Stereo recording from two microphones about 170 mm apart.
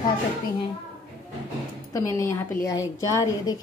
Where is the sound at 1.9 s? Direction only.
15° left (ahead or behind).